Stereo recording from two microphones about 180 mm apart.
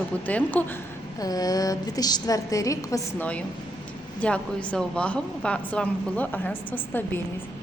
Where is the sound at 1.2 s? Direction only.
20° left (ahead or behind).